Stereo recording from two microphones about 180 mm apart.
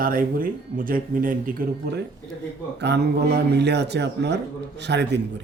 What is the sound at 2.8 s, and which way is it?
Speech, 65° right (ahead or behind).